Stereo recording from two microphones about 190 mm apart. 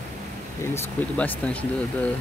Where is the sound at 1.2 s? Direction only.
5° left (ahead or behind).